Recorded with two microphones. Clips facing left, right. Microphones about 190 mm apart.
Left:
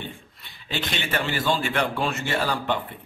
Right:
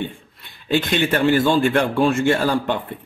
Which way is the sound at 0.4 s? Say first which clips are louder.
Right 11 dB; 50° right (ahead or behind).